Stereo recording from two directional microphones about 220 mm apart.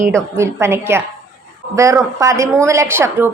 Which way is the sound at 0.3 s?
10° right (ahead or behind).